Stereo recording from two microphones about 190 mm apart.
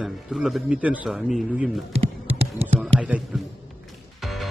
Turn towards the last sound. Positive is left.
turn(degrees=0)  # may be behind; listen again after turning